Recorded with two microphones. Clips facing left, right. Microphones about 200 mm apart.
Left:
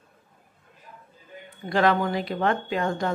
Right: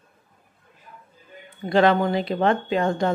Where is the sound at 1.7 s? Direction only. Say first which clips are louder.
Right 4 dB; 25° right (ahead or behind).